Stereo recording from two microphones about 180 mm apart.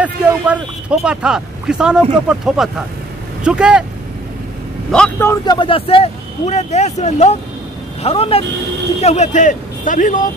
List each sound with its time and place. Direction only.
0.0 s speech: 5° right (ahead or behind)
4.9 s speech: 5° left (ahead or behind)
5.3 s a man's voice: 25° left (ahead or behind); by 10.2 s 45° left (ahead or behind)